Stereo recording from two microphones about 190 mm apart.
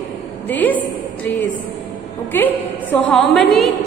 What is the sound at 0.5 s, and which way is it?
Speech, 10° left (ahead or behind).